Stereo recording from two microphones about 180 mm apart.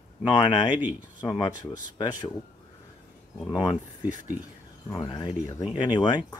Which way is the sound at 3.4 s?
20° left (ahead or behind).